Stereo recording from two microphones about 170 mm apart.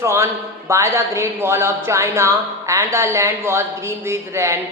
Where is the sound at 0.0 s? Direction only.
15° right (ahead or behind).